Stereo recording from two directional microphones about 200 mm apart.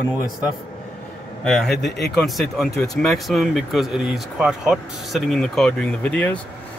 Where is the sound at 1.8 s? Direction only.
55° left (ahead or behind).